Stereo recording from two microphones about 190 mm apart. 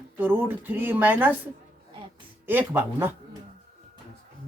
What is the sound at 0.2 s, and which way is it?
Speech, 10° right (ahead or behind).